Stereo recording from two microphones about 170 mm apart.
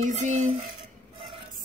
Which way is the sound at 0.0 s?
45° right (ahead or behind).